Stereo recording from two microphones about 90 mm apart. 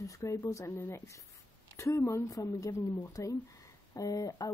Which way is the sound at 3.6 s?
40° left (ahead or behind).